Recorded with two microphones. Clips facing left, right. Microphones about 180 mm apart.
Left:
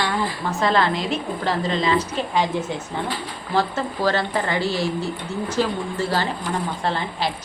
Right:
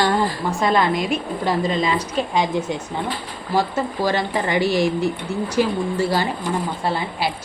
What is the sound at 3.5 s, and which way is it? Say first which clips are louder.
A woman's voice: right 2 dB; 10° right (ahead or behind).